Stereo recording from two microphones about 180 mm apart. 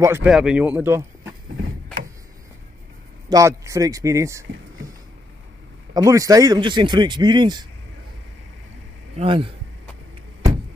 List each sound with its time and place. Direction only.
0.0 s speech: 15° right (ahead or behind)
3.3 s speech: 15° right (ahead or behind)
5.9 s speech: 20° right (ahead or behind)
9.1 s speech: 30° right (ahead or behind)